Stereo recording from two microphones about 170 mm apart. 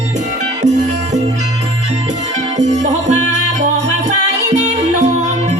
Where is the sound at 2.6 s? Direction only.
45° right (ahead or behind).